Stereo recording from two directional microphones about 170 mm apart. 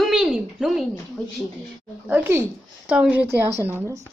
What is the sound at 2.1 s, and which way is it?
Speech, 10° right (ahead or behind).